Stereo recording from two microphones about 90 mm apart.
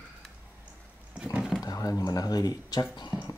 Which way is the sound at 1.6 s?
40° left (ahead or behind).